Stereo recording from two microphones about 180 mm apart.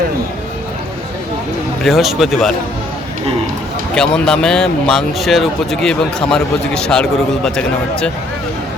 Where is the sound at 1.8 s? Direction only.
Centre (ahead or behind).